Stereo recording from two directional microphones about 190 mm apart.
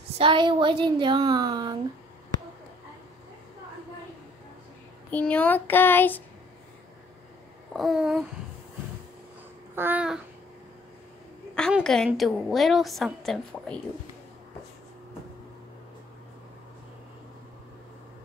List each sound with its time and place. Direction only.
0.2 s a woman's voice: 25° right (ahead or behind)
5.1 s child singing: 5° left (ahead or behind)
7.7 s a woman's voice: centre (ahead or behind)
9.8 s babbling: 10° right (ahead or behind)
11.5 s a woman's voice: 5° left (ahead or behind)